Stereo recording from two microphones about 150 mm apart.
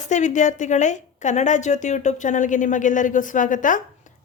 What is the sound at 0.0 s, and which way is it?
A woman's voice, 50° left (ahead or behind).